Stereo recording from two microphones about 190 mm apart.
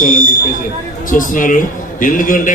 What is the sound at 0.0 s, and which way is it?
A man's voice, 45° left (ahead or behind).